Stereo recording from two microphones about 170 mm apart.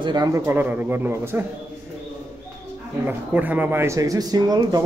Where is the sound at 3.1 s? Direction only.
10° right (ahead or behind).